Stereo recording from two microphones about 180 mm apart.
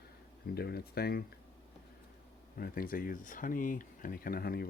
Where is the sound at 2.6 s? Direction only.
55° left (ahead or behind).